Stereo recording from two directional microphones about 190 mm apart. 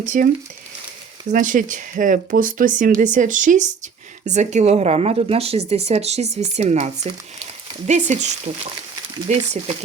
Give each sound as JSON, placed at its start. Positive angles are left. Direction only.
{"t": 0.1, "sound": "speech", "side_deg": -45}
{"t": 9.3, "sound": "speech", "side_deg": -35}